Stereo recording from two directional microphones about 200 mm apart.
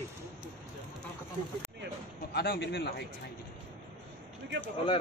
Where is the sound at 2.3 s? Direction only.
55° left (ahead or behind).